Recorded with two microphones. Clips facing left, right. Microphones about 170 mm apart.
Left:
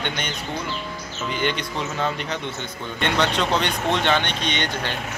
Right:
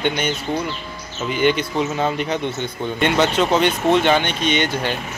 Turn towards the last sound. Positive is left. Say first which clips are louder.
# right 6 dB
turn(degrees=-10)  # may be behind; listen again after turning